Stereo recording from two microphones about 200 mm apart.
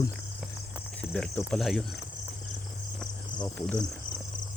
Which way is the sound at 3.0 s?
5° left (ahead or behind).